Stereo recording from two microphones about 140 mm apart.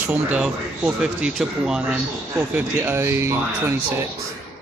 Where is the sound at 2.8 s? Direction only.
20° right (ahead or behind).